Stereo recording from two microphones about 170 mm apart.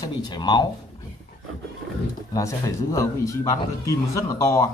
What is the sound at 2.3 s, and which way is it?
A man's voice, 20° left (ahead or behind).